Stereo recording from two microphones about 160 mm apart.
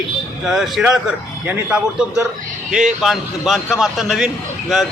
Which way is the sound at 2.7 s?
5° right (ahead or behind).